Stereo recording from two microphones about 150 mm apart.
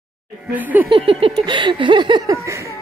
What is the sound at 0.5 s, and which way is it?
Laughter, 10° right (ahead or behind).